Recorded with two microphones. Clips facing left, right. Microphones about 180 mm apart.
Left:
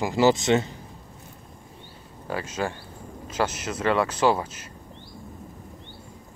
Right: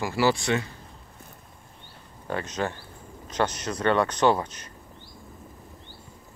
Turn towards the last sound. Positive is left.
turn(degrees=5)  # may be behind; listen again after turning